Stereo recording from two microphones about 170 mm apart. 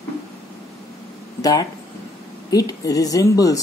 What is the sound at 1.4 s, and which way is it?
Speech, 20° left (ahead or behind).